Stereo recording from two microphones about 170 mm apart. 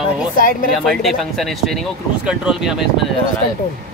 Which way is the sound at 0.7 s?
Centre (ahead or behind).